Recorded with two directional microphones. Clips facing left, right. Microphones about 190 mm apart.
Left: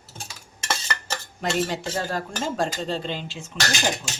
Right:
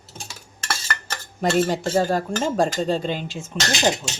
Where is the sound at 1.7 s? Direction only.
40° right (ahead or behind).